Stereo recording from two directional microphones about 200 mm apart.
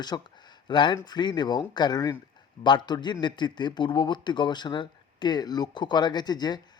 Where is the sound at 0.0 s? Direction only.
20° left (ahead or behind).